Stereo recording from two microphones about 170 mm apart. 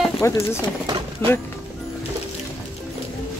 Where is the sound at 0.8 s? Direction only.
30° right (ahead or behind).